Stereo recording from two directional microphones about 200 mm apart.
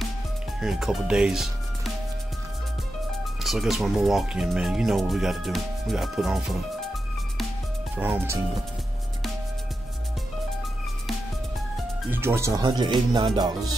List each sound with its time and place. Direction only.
0.6 s speech: centre (ahead or behind)
3.4 s speech: centre (ahead or behind)
8.0 s speech: 10° right (ahead or behind)
12.1 s speech: 10° right (ahead or behind)